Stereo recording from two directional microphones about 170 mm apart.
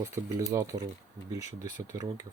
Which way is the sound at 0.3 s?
15° right (ahead or behind).